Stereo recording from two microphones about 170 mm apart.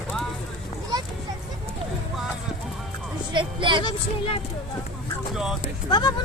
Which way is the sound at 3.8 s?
30° left (ahead or behind).